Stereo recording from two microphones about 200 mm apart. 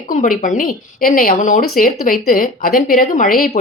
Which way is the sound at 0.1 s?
40° left (ahead or behind).